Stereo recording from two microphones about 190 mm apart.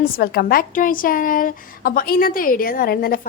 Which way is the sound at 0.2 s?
55° left (ahead or behind).